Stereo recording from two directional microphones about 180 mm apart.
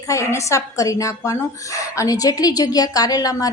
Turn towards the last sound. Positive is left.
turn(degrees=20)  # may be behind; listen again after turning